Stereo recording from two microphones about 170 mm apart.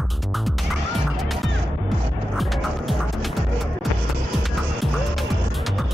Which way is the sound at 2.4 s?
Centre (ahead or behind).